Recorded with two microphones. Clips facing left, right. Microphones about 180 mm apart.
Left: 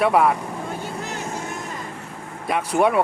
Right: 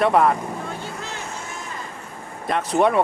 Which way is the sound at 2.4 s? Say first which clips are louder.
Even; 10° left (ahead or behind).